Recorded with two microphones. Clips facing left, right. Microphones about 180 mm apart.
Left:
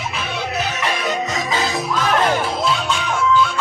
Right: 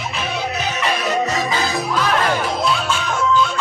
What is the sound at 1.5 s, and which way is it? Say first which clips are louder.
Music: even; 20° left (ahead or behind).